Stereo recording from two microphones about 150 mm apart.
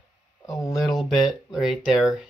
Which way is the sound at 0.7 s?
Centre (ahead or behind).